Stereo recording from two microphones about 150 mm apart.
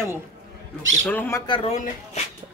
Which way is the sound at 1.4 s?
35° left (ahead or behind).